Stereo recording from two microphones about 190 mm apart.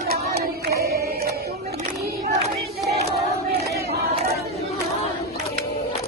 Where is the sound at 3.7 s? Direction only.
55° right (ahead or behind).